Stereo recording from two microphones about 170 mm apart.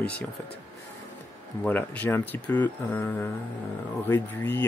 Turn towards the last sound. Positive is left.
turn(degrees=15)  # may be behind; listen again after turning